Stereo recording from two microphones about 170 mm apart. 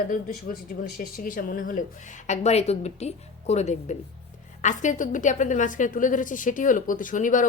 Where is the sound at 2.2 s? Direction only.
40° left (ahead or behind).